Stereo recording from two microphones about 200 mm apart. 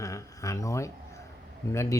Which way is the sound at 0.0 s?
15° left (ahead or behind).